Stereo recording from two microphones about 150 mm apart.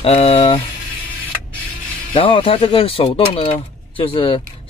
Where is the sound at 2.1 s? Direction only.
35° left (ahead or behind).